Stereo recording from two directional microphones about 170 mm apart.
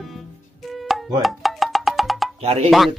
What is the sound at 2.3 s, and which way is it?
Speech, 35° right (ahead or behind).